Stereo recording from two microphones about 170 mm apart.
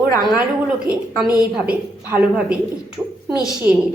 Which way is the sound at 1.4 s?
5° right (ahead or behind).